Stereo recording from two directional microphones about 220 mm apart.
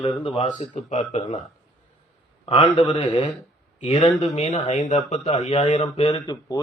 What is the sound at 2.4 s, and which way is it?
A man's voice, 30° left (ahead or behind).